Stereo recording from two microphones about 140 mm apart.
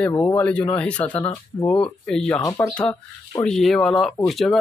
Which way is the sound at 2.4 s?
20° left (ahead or behind).